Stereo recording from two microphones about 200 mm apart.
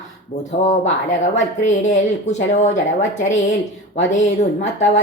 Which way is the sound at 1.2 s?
35° left (ahead or behind).